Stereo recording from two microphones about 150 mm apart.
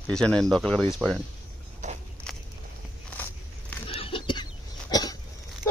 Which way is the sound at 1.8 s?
55° right (ahead or behind).